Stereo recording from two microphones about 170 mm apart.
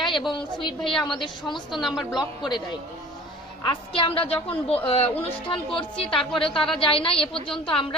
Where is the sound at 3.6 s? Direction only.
30° left (ahead or behind).